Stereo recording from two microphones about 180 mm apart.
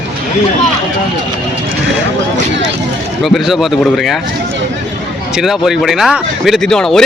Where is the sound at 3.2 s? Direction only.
Centre (ahead or behind).